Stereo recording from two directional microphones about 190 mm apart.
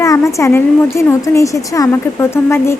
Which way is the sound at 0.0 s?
15° left (ahead or behind).